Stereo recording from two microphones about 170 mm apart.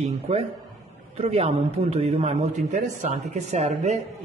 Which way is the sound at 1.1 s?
35° right (ahead or behind).